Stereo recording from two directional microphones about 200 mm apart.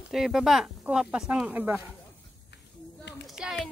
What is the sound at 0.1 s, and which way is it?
Speech, centre (ahead or behind).